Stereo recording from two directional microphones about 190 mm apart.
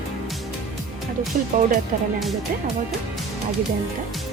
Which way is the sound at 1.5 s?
45° right (ahead or behind).